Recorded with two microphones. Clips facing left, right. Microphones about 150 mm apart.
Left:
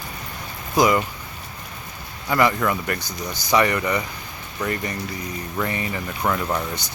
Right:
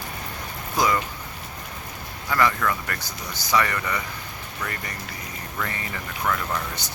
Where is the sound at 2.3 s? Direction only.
20° left (ahead or behind).